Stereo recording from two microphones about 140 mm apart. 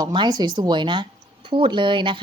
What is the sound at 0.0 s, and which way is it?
Speech, 30° right (ahead or behind).